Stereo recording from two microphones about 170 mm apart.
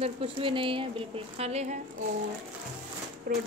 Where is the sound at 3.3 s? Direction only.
60° right (ahead or behind).